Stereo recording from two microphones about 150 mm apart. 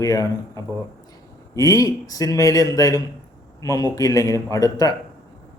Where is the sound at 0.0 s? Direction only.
20° left (ahead or behind).